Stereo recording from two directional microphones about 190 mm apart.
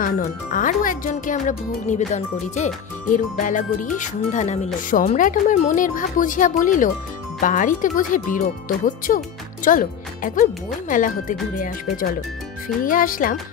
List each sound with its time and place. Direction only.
0.0 s speech: 45° left (ahead or behind)